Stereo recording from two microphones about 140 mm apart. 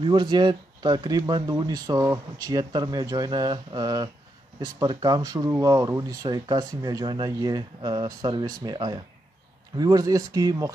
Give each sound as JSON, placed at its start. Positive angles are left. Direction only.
{"t": 0.0, "sound": "speech", "side_deg": -30}